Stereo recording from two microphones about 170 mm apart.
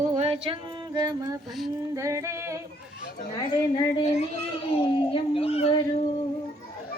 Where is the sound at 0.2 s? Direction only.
40° right (ahead or behind).